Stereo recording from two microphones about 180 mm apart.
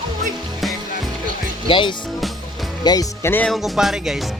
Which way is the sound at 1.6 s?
25° left (ahead or behind).